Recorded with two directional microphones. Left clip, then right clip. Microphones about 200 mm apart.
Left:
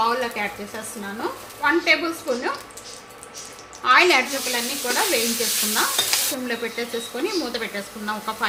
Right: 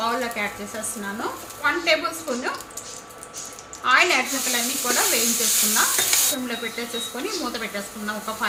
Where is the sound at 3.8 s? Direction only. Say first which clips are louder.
Left 2 dB; 35° left (ahead or behind).